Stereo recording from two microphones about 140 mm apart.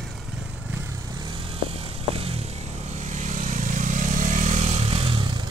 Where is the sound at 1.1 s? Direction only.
35° right (ahead or behind).